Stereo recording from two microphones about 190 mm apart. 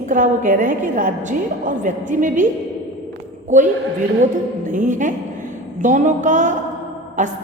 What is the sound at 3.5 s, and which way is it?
Speech, 40° right (ahead or behind).